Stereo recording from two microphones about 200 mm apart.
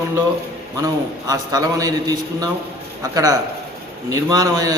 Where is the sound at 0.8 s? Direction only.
15° right (ahead or behind).